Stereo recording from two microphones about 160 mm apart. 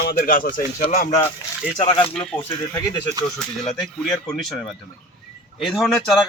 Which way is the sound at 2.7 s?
20° left (ahead or behind).